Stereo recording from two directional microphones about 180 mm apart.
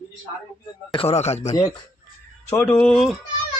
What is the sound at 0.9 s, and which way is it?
Speech, 30° left (ahead or behind).